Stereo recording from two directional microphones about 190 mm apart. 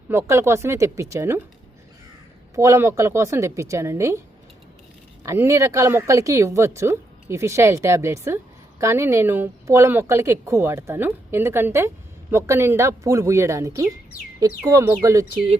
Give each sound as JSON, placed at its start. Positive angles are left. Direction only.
{"t": 0.1, "sound": "speech", "side_deg": -15}
{"t": 2.6, "sound": "speech", "side_deg": -15}
{"t": 5.2, "sound": "speech", "side_deg": -15}